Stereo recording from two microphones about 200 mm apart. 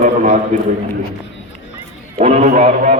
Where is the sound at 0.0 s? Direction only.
40° right (ahead or behind).